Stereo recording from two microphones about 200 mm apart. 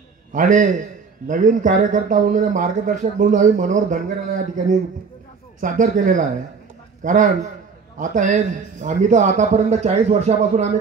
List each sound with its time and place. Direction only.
0.3 s a man's voice: 40° right (ahead or behind)